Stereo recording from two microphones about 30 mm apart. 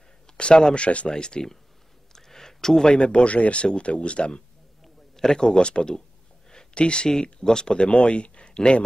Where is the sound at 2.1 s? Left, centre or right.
Centre.